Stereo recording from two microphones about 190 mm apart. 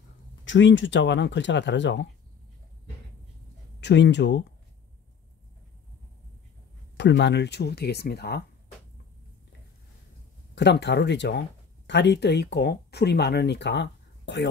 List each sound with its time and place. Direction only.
0.5 s speech: 75° left (ahead or behind)
3.8 s speech: 65° left (ahead or behind)
7.0 s speech: 65° left (ahead or behind)
10.5 s speech: 65° left (ahead or behind)